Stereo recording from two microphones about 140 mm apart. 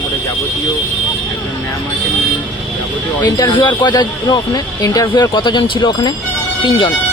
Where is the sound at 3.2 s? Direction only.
30° left (ahead or behind).